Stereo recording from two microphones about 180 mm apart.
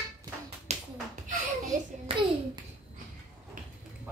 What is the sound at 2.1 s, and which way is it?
Hands, 30° right (ahead or behind).